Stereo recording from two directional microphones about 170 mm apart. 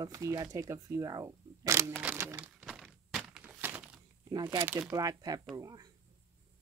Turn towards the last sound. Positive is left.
turn(degrees=-25)  # may be behind; listen again after turning